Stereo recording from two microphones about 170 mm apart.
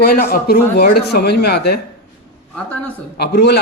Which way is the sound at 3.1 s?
75° left (ahead or behind).